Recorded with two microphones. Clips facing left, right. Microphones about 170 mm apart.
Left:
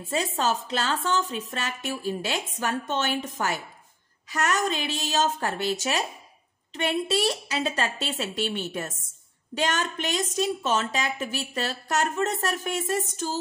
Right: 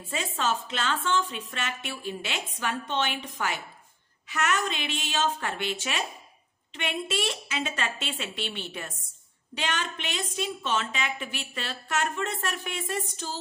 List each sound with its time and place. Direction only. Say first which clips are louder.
0.0 s a woman's voice: left 4 dB; 40° left (ahead or behind)